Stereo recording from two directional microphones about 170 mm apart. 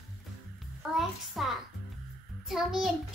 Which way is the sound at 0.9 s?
Centre (ahead or behind).